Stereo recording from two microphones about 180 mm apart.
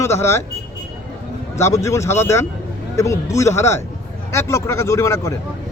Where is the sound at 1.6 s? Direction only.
15° left (ahead or behind).